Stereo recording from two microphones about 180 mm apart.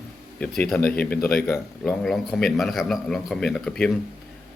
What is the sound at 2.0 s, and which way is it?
Speech, centre (ahead or behind).